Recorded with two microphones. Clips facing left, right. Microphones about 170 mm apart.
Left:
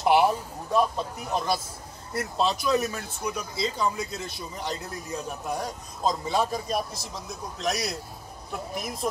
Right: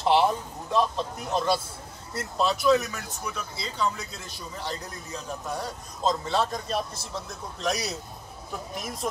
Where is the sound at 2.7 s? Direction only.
15° left (ahead or behind).